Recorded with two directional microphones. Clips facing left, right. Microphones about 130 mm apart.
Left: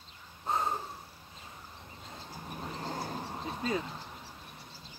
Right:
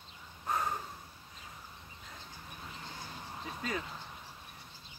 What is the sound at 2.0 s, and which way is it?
Vehicle, 35° left (ahead or behind).